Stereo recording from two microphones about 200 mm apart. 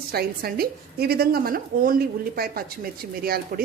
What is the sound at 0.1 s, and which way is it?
A woman's voice, 50° right (ahead or behind).